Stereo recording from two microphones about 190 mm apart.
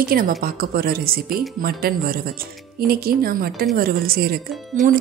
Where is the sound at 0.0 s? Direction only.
50° right (ahead or behind).